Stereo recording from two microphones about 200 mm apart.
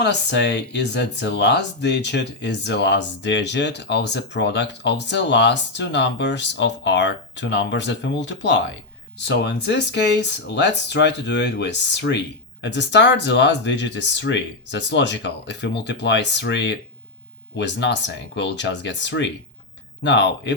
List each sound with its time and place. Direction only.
0.0 s speech: 60° left (ahead or behind)